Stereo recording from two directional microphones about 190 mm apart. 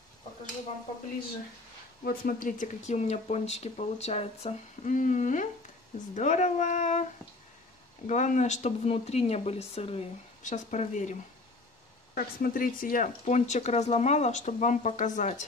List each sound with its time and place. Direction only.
2.0 s speech: 45° left (ahead or behind)
8.1 s speech: 40° left (ahead or behind)
12.2 s speech: 50° left (ahead or behind)